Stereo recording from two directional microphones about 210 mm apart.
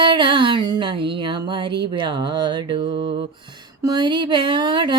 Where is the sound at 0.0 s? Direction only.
20° right (ahead or behind).